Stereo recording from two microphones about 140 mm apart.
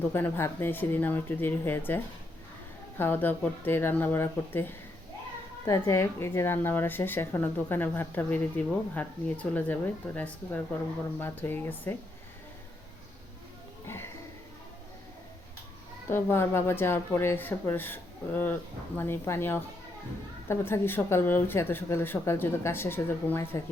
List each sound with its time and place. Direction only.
0.1 s speech: 15° left (ahead or behind)
3.0 s speech: 15° left (ahead or behind)
13.8 s speech: 15° left (ahead or behind)
16.0 s speech: 15° left (ahead or behind)